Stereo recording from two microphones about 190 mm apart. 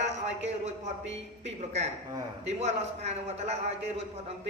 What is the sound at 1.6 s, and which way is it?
A man's voice, 35° right (ahead or behind).